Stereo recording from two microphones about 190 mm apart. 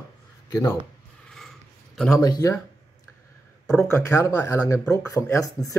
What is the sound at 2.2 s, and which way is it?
Speech, 20° left (ahead or behind).